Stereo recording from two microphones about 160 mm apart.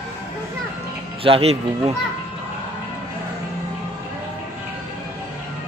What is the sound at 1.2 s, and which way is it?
Speech, 35° right (ahead or behind).